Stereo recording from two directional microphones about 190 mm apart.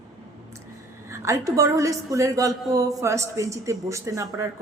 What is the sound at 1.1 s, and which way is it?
A woman's voice, 15° right (ahead or behind).